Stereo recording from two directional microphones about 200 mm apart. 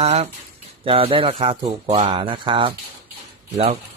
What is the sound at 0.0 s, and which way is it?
Speech, 30° right (ahead or behind).